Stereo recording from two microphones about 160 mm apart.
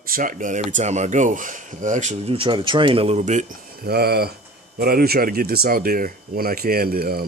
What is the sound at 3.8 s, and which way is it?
Speech, 80° right.